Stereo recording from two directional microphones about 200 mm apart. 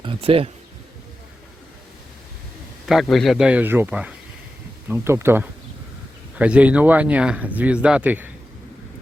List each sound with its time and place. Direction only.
0.0 s speech: 25° right (ahead or behind)
2.8 s a man's voice: centre (ahead or behind)